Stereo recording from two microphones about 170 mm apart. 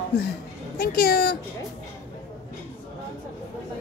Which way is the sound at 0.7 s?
65° left (ahead or behind).